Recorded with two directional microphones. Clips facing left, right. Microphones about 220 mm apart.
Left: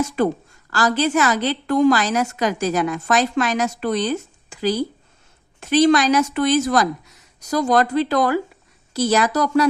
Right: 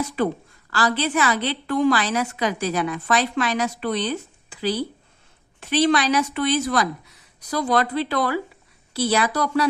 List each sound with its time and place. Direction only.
0.7 s a woman's voice: 45° left (ahead or behind)